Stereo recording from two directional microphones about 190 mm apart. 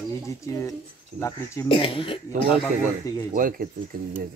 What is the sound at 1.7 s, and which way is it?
Speech, 30° left (ahead or behind).